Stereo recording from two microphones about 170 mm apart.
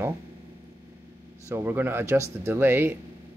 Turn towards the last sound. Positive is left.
turn(degrees=-10)  # may be behind; listen again after turning